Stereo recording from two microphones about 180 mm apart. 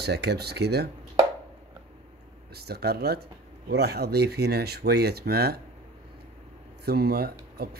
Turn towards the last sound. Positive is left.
turn(degrees=-60)  # may be behind; listen again after turning